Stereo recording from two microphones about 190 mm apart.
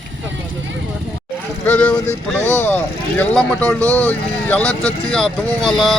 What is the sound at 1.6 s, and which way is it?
Speech, 5° left (ahead or behind).